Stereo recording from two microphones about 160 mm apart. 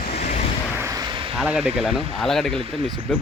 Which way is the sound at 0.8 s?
20° right (ahead or behind).